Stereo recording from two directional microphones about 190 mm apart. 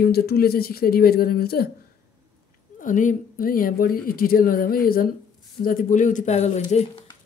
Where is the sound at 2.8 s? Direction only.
45° left (ahead or behind).